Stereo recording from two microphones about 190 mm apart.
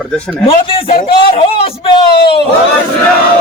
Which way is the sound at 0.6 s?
30° left (ahead or behind).